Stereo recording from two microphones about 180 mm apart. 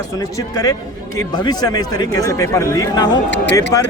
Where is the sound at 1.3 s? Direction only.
20° left (ahead or behind).